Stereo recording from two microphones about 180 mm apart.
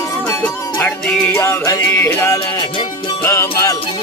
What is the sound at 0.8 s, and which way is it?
Music, 10° left (ahead or behind).